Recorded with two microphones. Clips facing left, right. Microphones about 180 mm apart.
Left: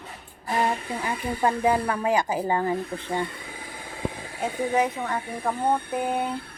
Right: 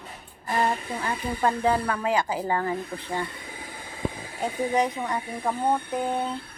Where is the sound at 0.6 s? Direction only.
15° left (ahead or behind).